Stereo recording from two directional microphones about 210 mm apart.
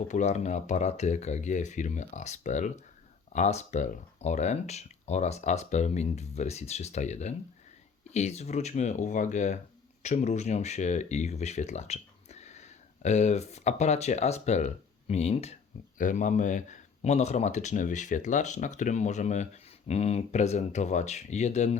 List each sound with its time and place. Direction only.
0.1 s speech: 35° left (ahead or behind)